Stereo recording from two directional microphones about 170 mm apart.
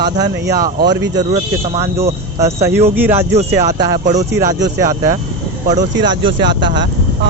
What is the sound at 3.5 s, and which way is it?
Speech, 20° right (ahead or behind).